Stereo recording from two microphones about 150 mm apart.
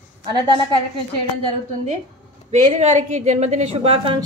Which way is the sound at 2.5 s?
50° right (ahead or behind).